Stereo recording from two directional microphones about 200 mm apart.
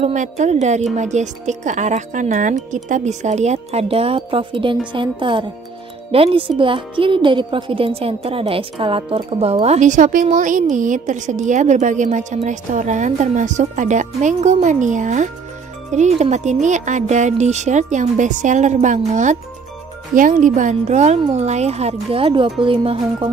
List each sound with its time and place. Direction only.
0.0 s speech: 35° right (ahead or behind)